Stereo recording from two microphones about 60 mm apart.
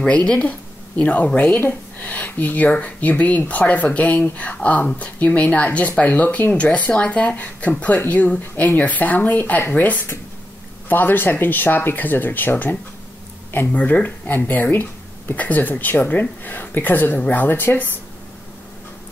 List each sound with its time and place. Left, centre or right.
0.0 s speech: centre
1.6 s speech: left